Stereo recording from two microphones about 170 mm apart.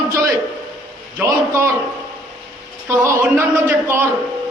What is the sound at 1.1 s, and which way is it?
Speech, 15° right (ahead or behind).